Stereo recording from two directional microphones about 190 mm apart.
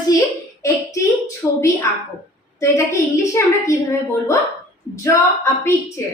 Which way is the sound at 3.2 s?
15° left (ahead or behind).